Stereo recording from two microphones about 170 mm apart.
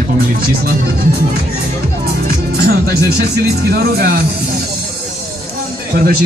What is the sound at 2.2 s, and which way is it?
Speech, 65° right (ahead or behind).